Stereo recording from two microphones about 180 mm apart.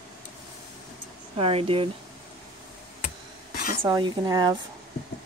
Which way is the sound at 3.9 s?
20° right (ahead or behind).